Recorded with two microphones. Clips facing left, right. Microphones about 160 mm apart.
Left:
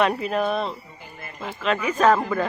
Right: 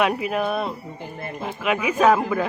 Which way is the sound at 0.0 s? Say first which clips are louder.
Even; 5° right (ahead or behind).